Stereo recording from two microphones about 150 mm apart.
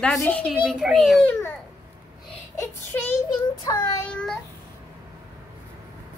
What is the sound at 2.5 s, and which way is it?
Speech, 15° left (ahead or behind).